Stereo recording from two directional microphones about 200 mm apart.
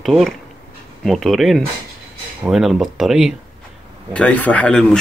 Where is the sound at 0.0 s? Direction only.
Centre (ahead or behind).